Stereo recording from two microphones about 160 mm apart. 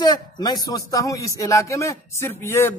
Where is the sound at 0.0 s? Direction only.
25° left (ahead or behind).